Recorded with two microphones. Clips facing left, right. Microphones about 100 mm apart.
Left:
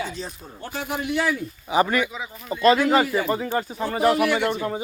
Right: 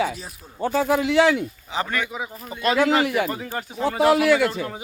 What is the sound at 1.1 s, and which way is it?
Speech, 90° right.